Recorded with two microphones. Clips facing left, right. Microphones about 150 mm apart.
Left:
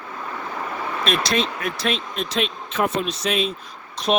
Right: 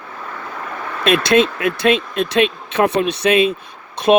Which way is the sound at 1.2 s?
55° right (ahead or behind).